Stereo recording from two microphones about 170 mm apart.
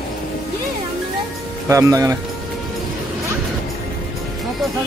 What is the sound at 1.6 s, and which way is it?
Speech, 15° right (ahead or behind).